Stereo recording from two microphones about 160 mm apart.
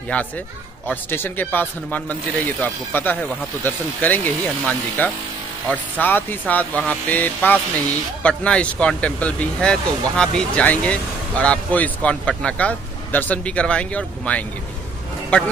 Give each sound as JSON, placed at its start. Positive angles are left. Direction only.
{"t": 0.1, "sound": "speech", "side_deg": 10}